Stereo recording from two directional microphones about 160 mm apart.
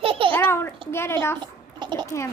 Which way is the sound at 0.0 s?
35° right (ahead or behind).